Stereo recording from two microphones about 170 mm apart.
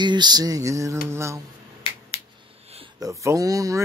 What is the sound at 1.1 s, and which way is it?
Speech, 15° right (ahead or behind).